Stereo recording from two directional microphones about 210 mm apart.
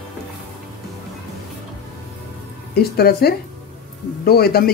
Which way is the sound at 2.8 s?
50° left (ahead or behind).